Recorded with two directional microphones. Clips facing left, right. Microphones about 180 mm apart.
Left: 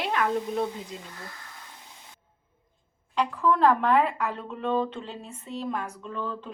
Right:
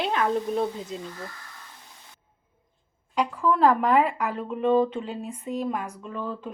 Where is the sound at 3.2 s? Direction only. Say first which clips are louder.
Right 1 dB; 10° right (ahead or behind).